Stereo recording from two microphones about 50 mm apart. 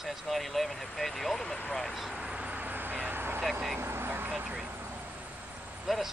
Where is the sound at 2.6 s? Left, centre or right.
Right.